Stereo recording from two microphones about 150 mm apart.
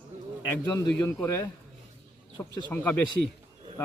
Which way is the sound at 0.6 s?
20° left (ahead or behind).